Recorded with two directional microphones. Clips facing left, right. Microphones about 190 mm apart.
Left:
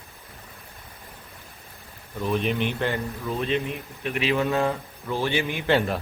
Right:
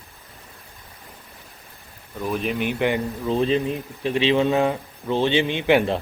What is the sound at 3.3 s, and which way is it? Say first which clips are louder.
Speech: right 6 dB; 30° right (ahead or behind).